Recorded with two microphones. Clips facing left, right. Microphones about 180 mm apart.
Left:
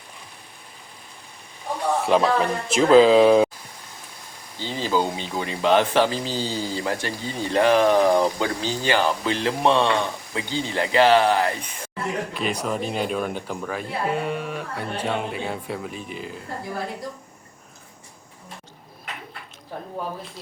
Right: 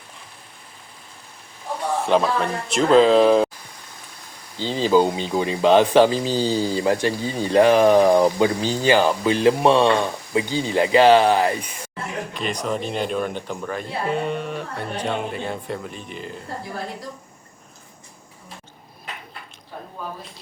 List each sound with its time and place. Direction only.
2.0 s speech: centre (ahead or behind)
4.8 s speech: 15° right (ahead or behind)
12.3 s speech: 5° left (ahead or behind)